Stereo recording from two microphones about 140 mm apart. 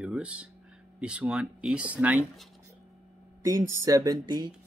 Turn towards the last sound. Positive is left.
turn(degrees=-25)  # may be behind; listen again after turning